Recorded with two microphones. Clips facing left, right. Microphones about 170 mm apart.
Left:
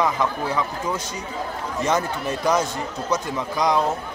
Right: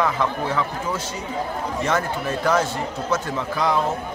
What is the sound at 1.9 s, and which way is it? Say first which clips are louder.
A man's voice: left 1 dB; 15° left (ahead or behind).